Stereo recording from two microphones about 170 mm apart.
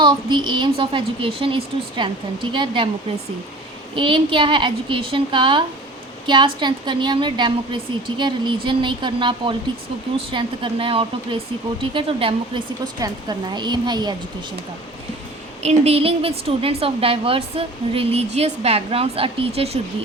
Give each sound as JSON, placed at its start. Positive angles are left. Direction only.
{"t": 0.0, "sound": "a woman's voice", "side_deg": -25}
{"t": 3.9, "sound": "a woman's voice", "side_deg": -30}
{"t": 15.6, "sound": "a woman's voice", "side_deg": -40}